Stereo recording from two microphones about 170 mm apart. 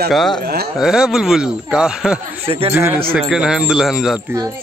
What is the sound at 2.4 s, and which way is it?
Speech, 35° right (ahead or behind).